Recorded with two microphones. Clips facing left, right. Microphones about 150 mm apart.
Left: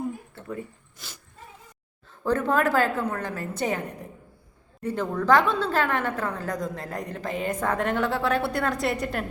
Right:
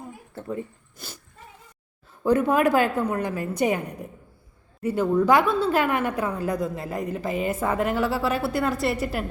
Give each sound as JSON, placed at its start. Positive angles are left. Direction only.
{"t": 2.2, "sound": "a woman's voice", "side_deg": -10}
{"t": 4.8, "sound": "a woman's voice", "side_deg": -10}